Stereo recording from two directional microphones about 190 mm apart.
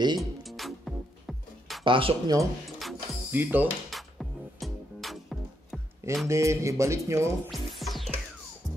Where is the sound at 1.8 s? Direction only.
25° right (ahead or behind).